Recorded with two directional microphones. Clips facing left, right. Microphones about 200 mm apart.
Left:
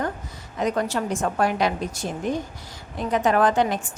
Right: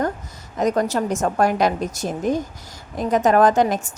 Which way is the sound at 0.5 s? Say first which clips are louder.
Right 4 dB; 45° right (ahead or behind).